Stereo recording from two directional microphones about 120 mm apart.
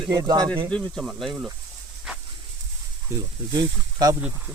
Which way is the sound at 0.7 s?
10° left (ahead or behind).